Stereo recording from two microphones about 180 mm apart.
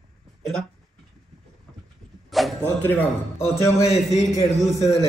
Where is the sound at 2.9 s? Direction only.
15° left (ahead or behind).